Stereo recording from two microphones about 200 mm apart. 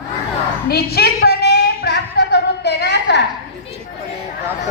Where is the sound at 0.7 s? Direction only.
50° left (ahead or behind).